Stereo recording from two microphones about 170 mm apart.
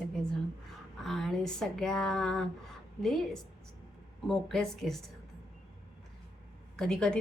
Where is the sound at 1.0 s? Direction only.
Centre (ahead or behind).